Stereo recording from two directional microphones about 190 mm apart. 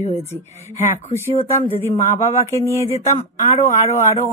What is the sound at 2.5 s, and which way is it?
Speech, 15° left (ahead or behind).